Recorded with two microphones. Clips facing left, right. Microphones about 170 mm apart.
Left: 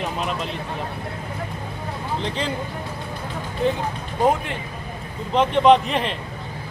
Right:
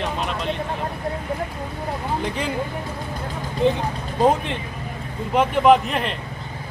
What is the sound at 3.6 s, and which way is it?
Speech, 15° right (ahead or behind).